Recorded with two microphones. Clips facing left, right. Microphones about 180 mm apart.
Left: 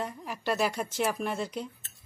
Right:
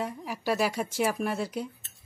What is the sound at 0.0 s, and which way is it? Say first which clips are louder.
Speech: right 2 dB; 5° right (ahead or behind).